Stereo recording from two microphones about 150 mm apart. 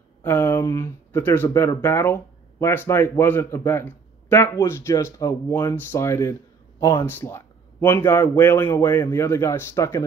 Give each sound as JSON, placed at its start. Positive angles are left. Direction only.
{"t": 0.2, "sound": "speech", "side_deg": 15}